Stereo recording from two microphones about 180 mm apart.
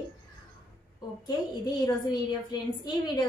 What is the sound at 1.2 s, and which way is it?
A woman's voice, 25° left (ahead or behind).